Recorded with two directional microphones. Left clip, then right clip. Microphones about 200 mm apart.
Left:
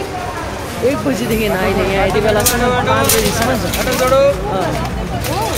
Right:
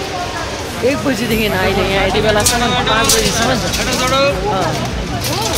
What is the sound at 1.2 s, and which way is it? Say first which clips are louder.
A woman's voice: right 1 dB; centre (ahead or behind).